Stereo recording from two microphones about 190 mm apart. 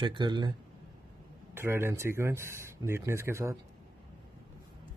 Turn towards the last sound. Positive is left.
turn(degrees=-15)  # may be behind; listen again after turning